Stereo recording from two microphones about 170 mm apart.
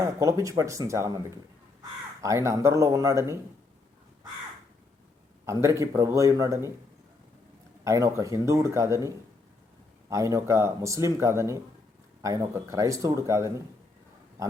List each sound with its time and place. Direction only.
0.0 s speech: 15° right (ahead or behind)
2.2 s speech: 20° right (ahead or behind)
5.5 s speech: 15° right (ahead or behind)
7.9 s speech: 20° right (ahead or behind)